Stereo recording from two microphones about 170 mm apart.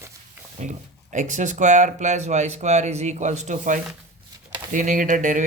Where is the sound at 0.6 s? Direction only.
45° right (ahead or behind).